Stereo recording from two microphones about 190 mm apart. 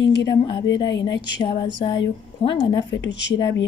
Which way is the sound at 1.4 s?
25° left (ahead or behind).